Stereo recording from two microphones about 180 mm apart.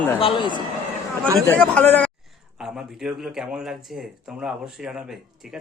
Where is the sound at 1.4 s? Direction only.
5° left (ahead or behind).